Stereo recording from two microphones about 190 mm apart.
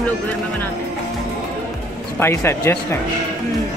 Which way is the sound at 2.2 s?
10° left (ahead or behind).